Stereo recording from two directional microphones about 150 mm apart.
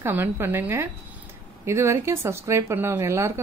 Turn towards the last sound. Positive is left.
turn(degrees=-20)  # may be behind; listen again after turning